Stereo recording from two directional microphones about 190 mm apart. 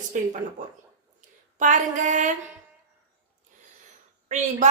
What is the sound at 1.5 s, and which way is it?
Speech, 40° right (ahead or behind).